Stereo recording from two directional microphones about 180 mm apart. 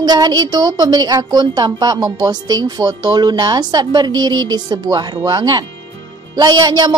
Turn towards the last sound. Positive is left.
turn(degrees=-25)  # may be behind; listen again after turning